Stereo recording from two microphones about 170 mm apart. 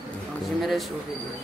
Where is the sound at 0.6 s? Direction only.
Centre (ahead or behind).